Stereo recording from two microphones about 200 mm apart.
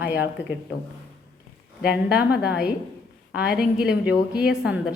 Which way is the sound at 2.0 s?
5° right (ahead or behind).